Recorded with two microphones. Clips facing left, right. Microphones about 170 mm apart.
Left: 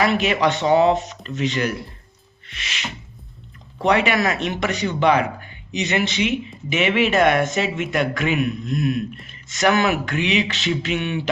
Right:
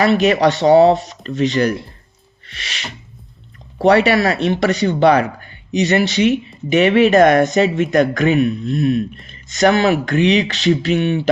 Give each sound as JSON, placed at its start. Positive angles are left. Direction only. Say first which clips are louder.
{"t": 0.0, "sound": "speech", "louder": "right 6 dB", "side_deg": -35}
{"t": 2.5, "sound": "a sound", "louder": "right 1 dB", "side_deg": -35}
{"t": 3.8, "sound": "speech", "louder": "right 6 dB", "side_deg": -35}